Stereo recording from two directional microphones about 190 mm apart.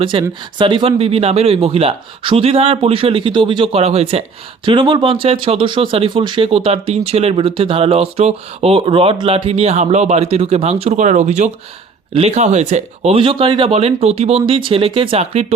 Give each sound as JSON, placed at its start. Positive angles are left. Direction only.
{"t": 0.0, "sound": "speech", "side_deg": -25}